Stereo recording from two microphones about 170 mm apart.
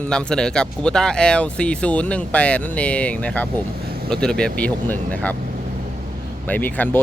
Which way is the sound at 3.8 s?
65° right (ahead or behind).